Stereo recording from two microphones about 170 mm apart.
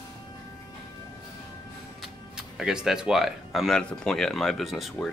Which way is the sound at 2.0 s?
5° right (ahead or behind).